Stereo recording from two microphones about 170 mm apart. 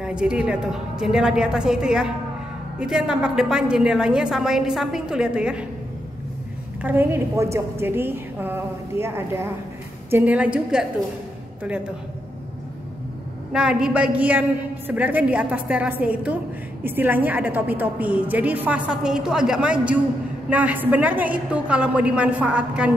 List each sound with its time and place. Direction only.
0.0 s a woman's voice: 5° right (ahead or behind)
6.8 s a woman's voice: 10° right (ahead or behind)
13.5 s a woman's voice: 5° right (ahead or behind)